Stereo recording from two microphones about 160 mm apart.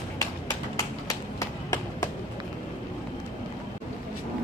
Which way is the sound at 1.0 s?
20° left (ahead or behind).